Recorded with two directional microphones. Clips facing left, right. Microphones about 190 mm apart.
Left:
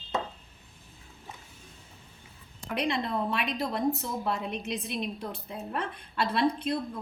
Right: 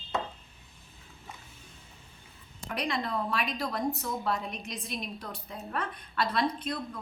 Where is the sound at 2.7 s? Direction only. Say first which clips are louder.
Left 3 dB; 25° left (ahead or behind).